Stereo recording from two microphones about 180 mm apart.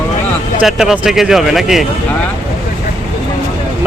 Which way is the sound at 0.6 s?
5° right (ahead or behind).